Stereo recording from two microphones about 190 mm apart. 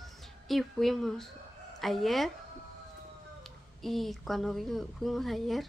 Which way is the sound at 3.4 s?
Centre (ahead or behind).